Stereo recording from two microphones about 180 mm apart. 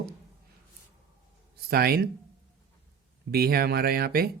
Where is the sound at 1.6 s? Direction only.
60° right (ahead or behind).